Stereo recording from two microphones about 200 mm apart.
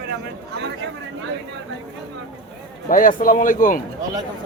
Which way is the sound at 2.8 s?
40° left (ahead or behind).